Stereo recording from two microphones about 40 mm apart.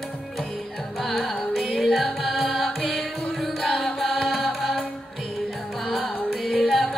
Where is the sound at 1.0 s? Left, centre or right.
Centre.